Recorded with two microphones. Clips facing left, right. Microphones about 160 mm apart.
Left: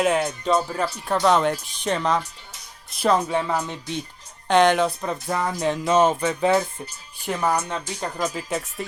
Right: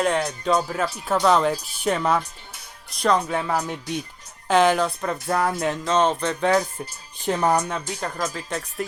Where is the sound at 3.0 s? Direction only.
5° left (ahead or behind).